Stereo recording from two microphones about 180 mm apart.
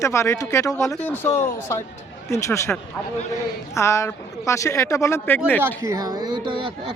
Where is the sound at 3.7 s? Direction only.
15° left (ahead or behind).